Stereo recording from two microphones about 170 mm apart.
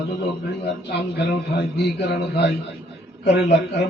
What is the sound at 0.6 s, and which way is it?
A man's voice, 75° left (ahead or behind).